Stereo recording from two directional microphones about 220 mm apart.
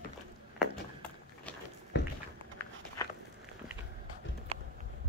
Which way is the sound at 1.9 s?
50° left (ahead or behind).